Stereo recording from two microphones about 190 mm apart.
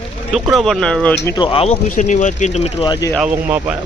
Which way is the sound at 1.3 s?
25° left (ahead or behind).